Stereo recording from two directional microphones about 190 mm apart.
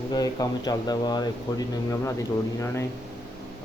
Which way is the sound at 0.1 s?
20° left (ahead or behind).